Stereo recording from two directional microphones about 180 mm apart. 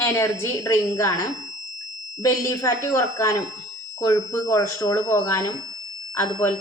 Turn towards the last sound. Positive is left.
turn(degrees=15)  # may be behind; listen again after turning